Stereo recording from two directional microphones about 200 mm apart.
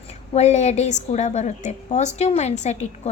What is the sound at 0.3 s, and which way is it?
A woman's voice, 35° left (ahead or behind).